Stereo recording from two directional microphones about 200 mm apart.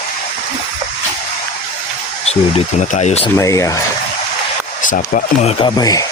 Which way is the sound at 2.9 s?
35° left (ahead or behind).